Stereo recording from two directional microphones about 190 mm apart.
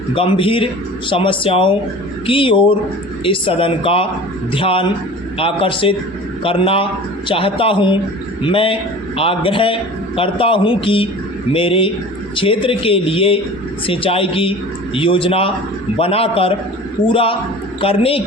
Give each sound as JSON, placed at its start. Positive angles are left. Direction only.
{"t": 0.1, "sound": "a woman's voice", "side_deg": 25}